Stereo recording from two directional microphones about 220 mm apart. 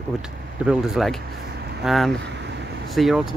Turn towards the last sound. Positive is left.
turn(degrees=0)  # may be behind; listen again after turning